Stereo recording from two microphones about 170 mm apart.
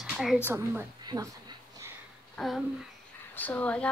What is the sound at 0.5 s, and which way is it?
Speech, 10° right (ahead or behind).